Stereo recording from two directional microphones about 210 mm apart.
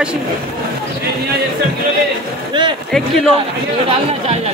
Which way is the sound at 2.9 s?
Centre (ahead or behind).